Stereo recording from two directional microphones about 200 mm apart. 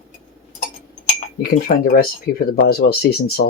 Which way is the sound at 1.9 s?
50° left (ahead or behind).